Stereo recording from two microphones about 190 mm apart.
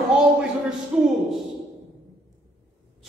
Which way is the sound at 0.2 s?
5° right (ahead or behind).